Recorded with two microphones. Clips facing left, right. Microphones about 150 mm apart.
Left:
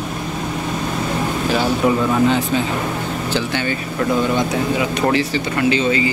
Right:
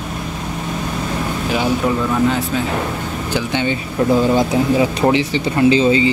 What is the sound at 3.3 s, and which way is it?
Speech, 20° right (ahead or behind).